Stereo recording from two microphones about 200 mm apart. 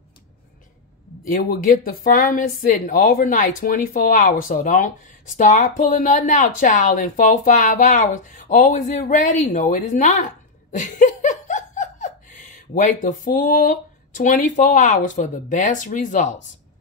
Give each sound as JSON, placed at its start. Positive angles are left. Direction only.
{"t": 1.3, "sound": "speech", "side_deg": 45}
{"t": 10.7, "sound": "laughter", "side_deg": 40}